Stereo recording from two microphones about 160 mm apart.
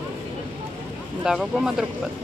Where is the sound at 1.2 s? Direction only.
5° right (ahead or behind).